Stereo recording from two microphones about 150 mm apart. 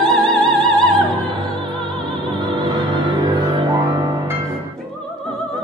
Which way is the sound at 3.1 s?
30° right (ahead or behind).